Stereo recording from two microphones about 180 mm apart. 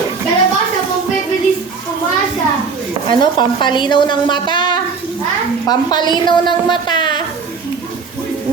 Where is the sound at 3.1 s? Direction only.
25° left (ahead or behind).